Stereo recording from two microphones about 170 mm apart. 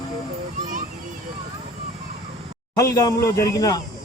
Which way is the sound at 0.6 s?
50° right (ahead or behind).